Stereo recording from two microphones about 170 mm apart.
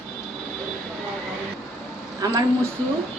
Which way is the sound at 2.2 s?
20° right (ahead or behind).